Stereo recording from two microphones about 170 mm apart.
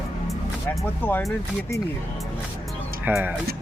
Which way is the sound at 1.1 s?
15° left (ahead or behind).